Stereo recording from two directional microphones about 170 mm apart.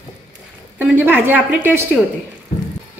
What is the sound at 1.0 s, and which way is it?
Speech, 10° right (ahead or behind).